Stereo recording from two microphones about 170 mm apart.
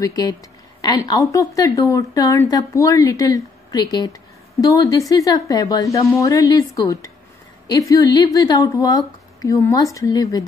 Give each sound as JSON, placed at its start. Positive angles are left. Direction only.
{"t": 0.0, "sound": "a woman's voice", "side_deg": 20}